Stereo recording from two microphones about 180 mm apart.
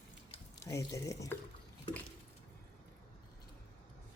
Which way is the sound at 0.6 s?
15° left (ahead or behind).